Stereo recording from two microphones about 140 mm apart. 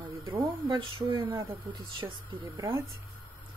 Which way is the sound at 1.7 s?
35° right (ahead or behind).